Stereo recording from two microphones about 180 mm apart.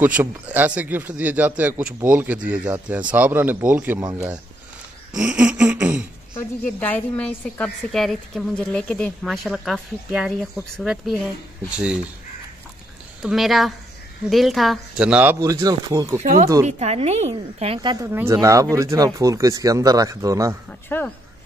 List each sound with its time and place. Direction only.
0.0 s speech: 10° right (ahead or behind)
5.1 s a woman's voice: 5° right (ahead or behind)
6.8 s a woman's voice: 10° left (ahead or behind)
13.2 s a woman's voice: centre (ahead or behind)
15.4 s speech: 20° right (ahead or behind)
16.2 s a woman's voice: 45° right (ahead or behind)
17.9 s speech: 15° right (ahead or behind)
20.9 s speech: 10° left (ahead or behind)